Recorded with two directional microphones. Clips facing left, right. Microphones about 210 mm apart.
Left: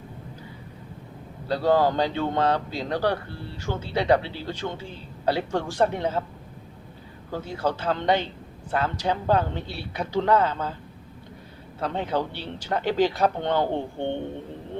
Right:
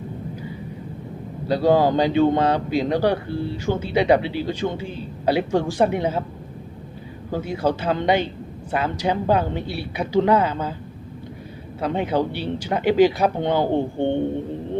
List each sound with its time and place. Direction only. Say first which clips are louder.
1.5 s a man's voice: right 4 dB; 15° right (ahead or behind)
7.3 s a man's voice: right 5 dB; 10° right (ahead or behind)
11.8 s a man's voice: right 5 dB; 15° right (ahead or behind)